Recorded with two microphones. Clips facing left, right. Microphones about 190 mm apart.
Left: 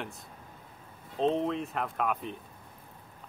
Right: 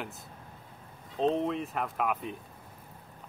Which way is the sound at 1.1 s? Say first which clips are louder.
Even; centre (ahead or behind).